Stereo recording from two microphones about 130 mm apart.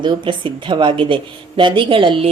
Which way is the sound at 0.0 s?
40° right (ahead or behind).